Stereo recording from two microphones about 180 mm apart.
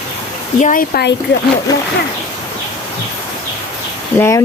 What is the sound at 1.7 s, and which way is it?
Speech, 20° left (ahead or behind).